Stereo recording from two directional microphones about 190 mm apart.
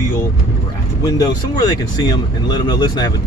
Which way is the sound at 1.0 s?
20° left (ahead or behind).